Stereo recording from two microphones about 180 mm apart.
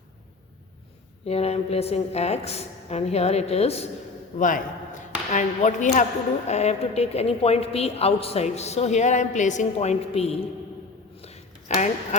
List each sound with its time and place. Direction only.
1.2 s a woman's voice: 35° left (ahead or behind)
4.4 s a woman's voice: 45° left (ahead or behind)
11.7 s a woman's voice: 40° left (ahead or behind)